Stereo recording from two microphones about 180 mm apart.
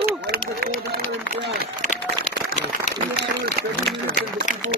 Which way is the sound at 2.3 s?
40° left (ahead or behind).